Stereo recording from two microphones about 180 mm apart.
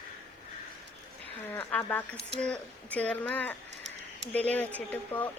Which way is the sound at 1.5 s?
10° left (ahead or behind).